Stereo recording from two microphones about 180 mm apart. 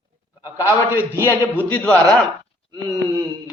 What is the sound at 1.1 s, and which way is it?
A man's voice, 15° left (ahead or behind).